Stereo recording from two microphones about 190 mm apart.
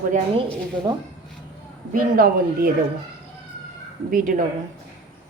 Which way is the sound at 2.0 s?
50° right (ahead or behind).